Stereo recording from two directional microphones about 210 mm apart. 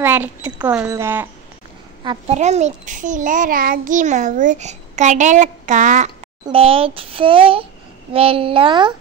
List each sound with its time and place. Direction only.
0.0 s speech: 10° right (ahead or behind)
2.0 s a child's voice: 30° right (ahead or behind)
6.4 s a child's voice: 25° right (ahead or behind)